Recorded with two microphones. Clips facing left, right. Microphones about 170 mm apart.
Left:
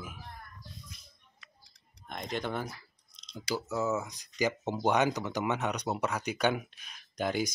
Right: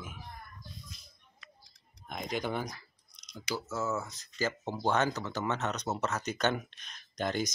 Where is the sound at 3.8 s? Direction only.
15° left (ahead or behind).